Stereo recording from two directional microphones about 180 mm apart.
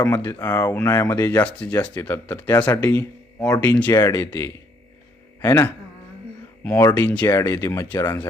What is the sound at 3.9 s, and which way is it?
Speech, 20° left (ahead or behind).